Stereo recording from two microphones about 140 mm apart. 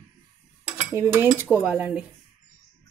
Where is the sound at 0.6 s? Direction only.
15° right (ahead or behind).